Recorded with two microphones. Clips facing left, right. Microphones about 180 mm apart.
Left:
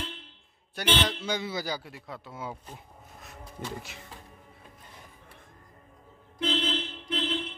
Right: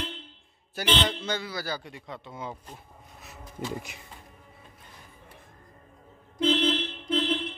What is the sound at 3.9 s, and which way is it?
Speech, 15° right (ahead or behind).